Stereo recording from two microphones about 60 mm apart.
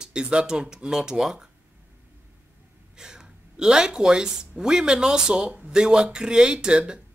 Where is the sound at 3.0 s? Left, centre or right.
Centre.